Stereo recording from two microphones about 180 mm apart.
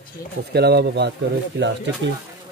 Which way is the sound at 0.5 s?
65° right (ahead or behind).